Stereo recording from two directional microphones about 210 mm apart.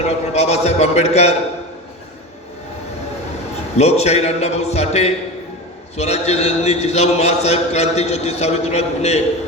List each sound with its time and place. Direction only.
0.0 s a man's voice: 30° left (ahead or behind)
3.8 s a man's voice: 30° left (ahead or behind)